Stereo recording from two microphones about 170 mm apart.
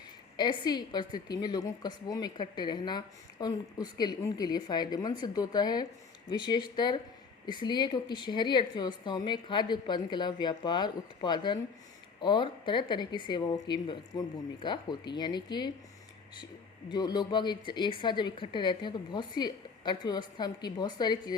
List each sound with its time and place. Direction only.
0.3 s a woman's voice: 25° left (ahead or behind)
16.9 s a woman's voice: 25° left (ahead or behind)